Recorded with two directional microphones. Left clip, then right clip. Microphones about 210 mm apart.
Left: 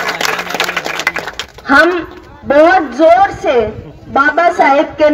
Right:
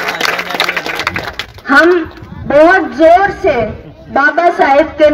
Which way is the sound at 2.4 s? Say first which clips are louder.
Right 1 dB; 35° left (ahead or behind).